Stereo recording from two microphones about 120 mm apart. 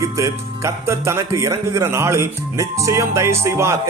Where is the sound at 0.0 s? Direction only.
25° right (ahead or behind).